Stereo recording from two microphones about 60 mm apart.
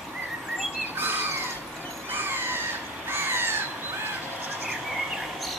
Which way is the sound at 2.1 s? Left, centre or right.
Right.